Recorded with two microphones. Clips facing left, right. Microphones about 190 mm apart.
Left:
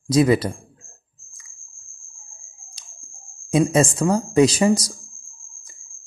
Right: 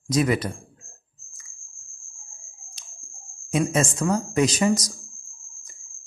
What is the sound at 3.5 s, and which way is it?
Speech, 30° left (ahead or behind).